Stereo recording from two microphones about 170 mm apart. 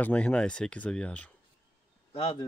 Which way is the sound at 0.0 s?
5° left (ahead or behind).